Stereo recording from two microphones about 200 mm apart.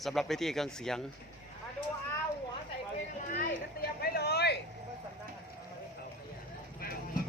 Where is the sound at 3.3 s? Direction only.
45° left (ahead or behind).